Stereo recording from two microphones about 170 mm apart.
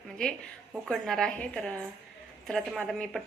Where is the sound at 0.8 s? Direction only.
Centre (ahead or behind).